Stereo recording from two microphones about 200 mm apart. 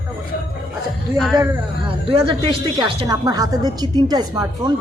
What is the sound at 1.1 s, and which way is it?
Speech, 5° right (ahead or behind).